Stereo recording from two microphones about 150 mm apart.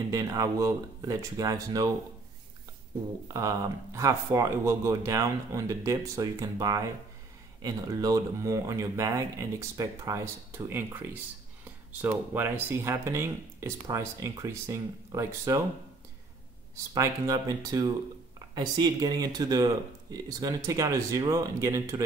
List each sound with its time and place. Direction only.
0.1 s speech: 20° right (ahead or behind)
3.3 s speech: 20° right (ahead or behind)
16.9 s speech: 25° right (ahead or behind)